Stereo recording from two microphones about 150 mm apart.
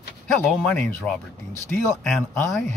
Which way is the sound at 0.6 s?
5° left (ahead or behind).